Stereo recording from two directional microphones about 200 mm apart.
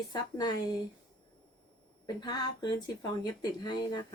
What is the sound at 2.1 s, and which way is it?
A woman's voice, 20° left (ahead or behind).